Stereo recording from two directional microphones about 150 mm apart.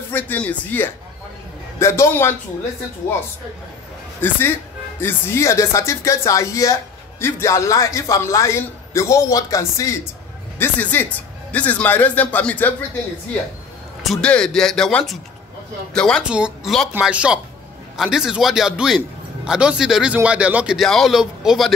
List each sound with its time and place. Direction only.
0.1 s speech: 10° left (ahead or behind)
4.2 s speech: 15° left (ahead or behind)
14.0 s a man's voice: 5° left (ahead or behind)
16.3 s a man's voice: 5° right (ahead or behind)